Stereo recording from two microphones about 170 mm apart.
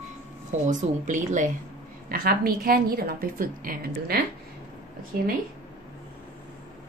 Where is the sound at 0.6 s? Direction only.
45° right (ahead or behind).